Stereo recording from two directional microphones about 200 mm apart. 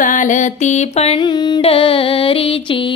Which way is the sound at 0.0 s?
40° left (ahead or behind).